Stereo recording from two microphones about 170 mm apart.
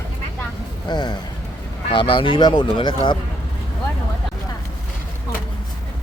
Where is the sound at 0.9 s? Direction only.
25° left (ahead or behind).